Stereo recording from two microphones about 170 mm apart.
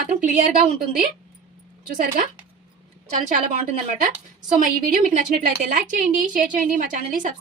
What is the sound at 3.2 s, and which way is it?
A woman's voice, 45° right (ahead or behind).